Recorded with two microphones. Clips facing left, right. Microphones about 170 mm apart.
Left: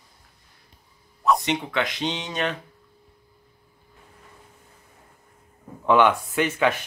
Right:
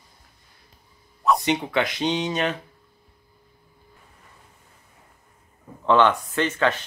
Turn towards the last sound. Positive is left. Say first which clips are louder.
# even
turn(degrees=10)  # may be behind; listen again after turning